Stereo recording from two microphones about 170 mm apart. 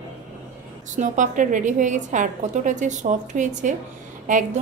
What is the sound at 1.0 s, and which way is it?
A woman's voice, 45° right (ahead or behind).